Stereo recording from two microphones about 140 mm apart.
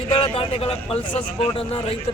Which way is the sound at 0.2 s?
40° left (ahead or behind).